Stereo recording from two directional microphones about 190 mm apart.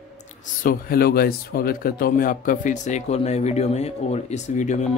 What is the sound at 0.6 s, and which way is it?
Speech, 50° left (ahead or behind).